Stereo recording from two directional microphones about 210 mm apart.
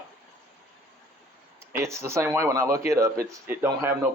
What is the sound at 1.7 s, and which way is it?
Speech, 10° right (ahead or behind).